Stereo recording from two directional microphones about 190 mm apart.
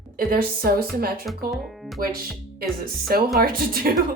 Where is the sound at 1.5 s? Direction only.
Centre (ahead or behind).